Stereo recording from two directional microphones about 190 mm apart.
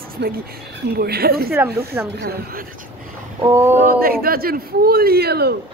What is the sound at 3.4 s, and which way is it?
Speech, 15° right (ahead or behind).